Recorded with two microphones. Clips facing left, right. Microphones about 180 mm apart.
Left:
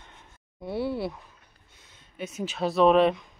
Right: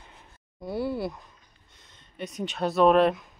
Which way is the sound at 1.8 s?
5° left (ahead or behind).